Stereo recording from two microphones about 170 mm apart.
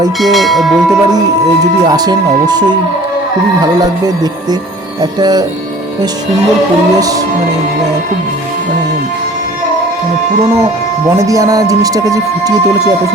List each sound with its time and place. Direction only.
0.2 s church bell: centre (ahead or behind)
1.8 s speech: 25° right (ahead or behind)
5.2 s speech: 25° right (ahead or behind)
11.1 s speech: 20° right (ahead or behind)